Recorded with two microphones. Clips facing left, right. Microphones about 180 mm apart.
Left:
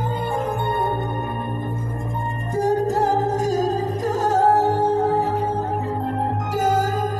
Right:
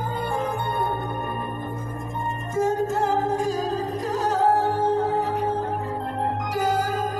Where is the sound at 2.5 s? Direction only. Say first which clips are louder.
Left 3 dB; 35° left (ahead or behind).